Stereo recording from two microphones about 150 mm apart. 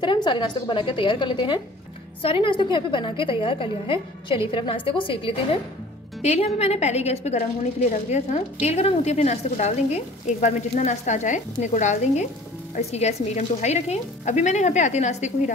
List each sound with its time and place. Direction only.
0.0 s a woman's voice: 30° left (ahead or behind); by 15.5 s 50° left (ahead or behind)